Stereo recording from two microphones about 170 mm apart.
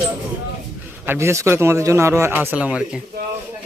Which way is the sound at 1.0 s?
15° right (ahead or behind).